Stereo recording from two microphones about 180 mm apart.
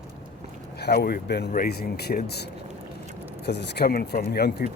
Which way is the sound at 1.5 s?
55° left (ahead or behind).